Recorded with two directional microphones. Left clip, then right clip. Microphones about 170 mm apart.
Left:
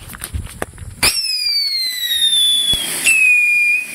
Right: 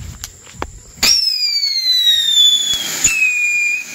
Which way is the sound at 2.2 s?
5° left (ahead or behind).